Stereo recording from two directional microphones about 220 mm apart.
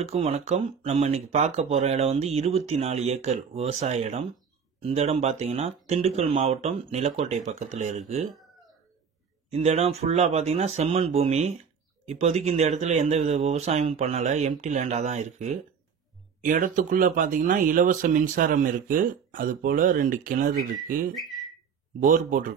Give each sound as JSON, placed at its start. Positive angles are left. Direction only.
{"t": 0.1, "sound": "speech", "side_deg": -30}
{"t": 9.5, "sound": "speech", "side_deg": -30}
{"t": 21.1, "sound": "speech", "side_deg": 0}
{"t": 22.0, "sound": "speech", "side_deg": -35}